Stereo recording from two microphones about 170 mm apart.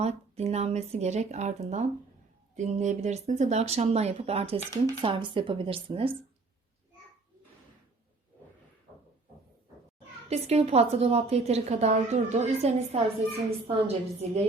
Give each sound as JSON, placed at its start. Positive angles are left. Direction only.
{"t": 0.0, "sound": "speech", "side_deg": -40}
{"t": 10.2, "sound": "speech", "side_deg": -40}